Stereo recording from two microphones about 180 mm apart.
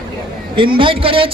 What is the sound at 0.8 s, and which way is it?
Speech, 30° right (ahead or behind).